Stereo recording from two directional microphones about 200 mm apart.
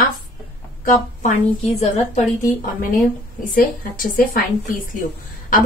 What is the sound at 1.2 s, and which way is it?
A woman's voice, 35° left (ahead or behind).